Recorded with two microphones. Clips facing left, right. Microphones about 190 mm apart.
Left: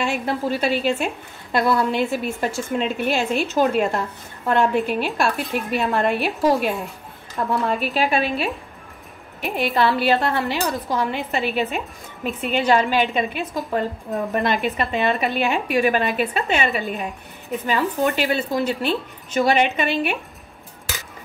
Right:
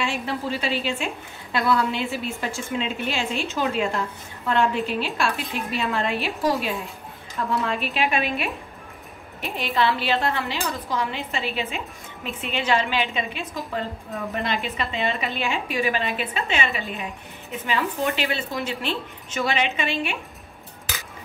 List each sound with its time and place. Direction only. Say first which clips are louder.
0.0 s a woman's voice: left 4 dB; 45° left (ahead or behind)
7.8 s a woman's voice: left 3 dB; 40° left (ahead or behind)
9.4 s a woman's voice: left 4 dB; 45° left (ahead or behind)